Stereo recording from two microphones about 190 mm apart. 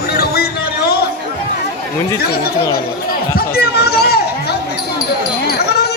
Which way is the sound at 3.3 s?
55° left (ahead or behind).